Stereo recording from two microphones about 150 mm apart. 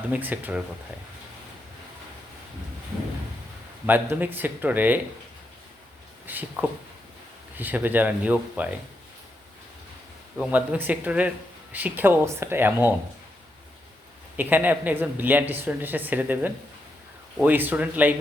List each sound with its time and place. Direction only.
0.1 s speech: 10° right (ahead or behind)
3.8 s speech: 10° right (ahead or behind)
6.2 s speech: 10° right (ahead or behind)
10.3 s speech: 5° right (ahead or behind)
14.3 s speech: 10° right (ahead or behind)